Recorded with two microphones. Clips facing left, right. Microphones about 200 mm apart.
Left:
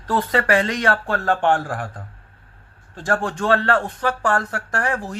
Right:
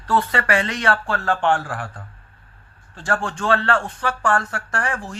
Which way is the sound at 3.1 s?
15° left (ahead or behind).